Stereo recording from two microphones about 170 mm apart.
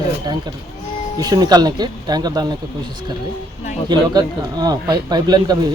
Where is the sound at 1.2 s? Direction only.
25° right (ahead or behind).